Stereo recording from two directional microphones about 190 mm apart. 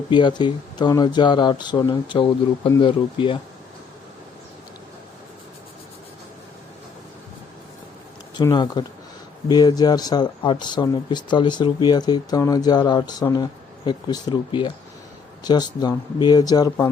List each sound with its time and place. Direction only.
0.1 s speech: 25° left (ahead or behind)
8.4 s speech: 20° left (ahead or behind)